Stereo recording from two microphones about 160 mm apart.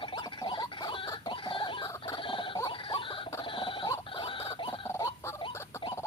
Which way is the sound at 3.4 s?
35° left (ahead or behind).